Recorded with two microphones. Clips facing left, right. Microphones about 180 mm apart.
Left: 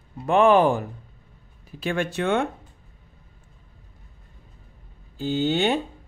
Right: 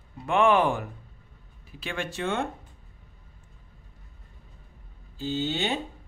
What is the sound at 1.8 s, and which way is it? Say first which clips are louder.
Speech: left 7 dB; 50° left (ahead or behind).